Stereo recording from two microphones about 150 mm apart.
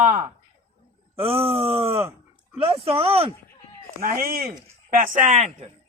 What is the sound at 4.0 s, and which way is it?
Speech, 70° right (ahead or behind).